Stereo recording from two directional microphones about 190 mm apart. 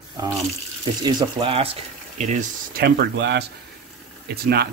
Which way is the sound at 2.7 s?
55° right (ahead or behind).